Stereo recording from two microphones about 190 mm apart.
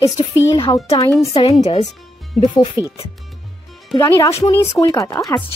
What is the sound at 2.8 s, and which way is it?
Speech, 10° right (ahead or behind).